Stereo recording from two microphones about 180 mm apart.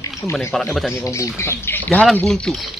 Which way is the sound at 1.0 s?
15° left (ahead or behind).